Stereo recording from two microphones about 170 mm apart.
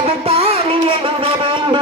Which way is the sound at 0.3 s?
35° right (ahead or behind).